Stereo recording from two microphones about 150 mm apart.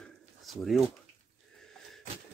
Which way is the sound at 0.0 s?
Centre (ahead or behind).